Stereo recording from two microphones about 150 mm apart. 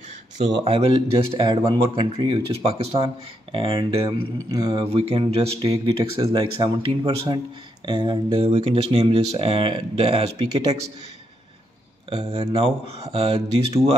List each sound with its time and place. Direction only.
0.6 s speech: 40° right (ahead or behind)
1.5 s speech: 25° right (ahead or behind)
4.5 s speech: 25° right (ahead or behind)
4.9 s speech: 45° right (ahead or behind)
8.5 s speech: 40° right (ahead or behind)
12.3 s speech: 40° right (ahead or behind)